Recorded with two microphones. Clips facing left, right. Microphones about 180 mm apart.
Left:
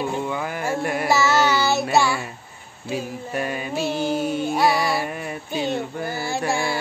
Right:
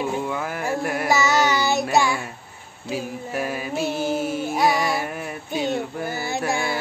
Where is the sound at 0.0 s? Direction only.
Centre (ahead or behind).